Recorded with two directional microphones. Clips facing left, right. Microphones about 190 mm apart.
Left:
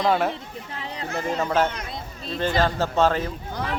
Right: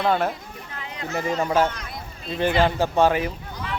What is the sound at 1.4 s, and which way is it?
A man's voice, 10° right (ahead or behind).